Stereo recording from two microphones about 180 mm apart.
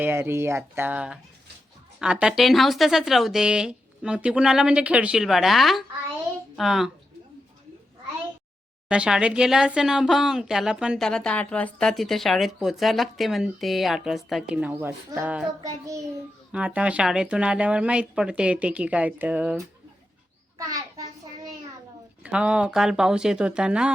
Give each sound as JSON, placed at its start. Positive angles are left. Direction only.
{"t": 0.0, "sound": "a woman's voice", "side_deg": -10}
{"t": 8.9, "sound": "a woman's voice", "side_deg": -5}
{"t": 16.5, "sound": "a woman's voice", "side_deg": -5}
{"t": 20.6, "sound": "a sound", "side_deg": -20}
{"t": 22.2, "sound": "speech", "side_deg": -5}